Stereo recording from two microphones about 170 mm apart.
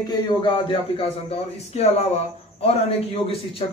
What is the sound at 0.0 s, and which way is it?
A man's voice, 25° left (ahead or behind).